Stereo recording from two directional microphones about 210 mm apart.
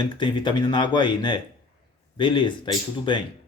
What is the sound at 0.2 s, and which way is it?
Speech, 20° left (ahead or behind).